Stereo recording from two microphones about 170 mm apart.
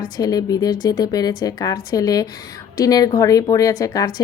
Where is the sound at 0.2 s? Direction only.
20° left (ahead or behind).